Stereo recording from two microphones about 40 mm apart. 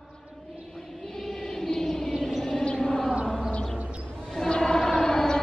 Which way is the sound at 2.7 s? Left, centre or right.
Left.